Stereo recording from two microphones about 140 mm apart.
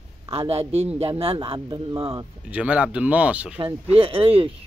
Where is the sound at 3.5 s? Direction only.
40° right (ahead or behind).